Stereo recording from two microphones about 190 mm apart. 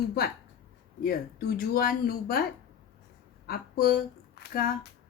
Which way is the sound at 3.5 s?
50° left (ahead or behind).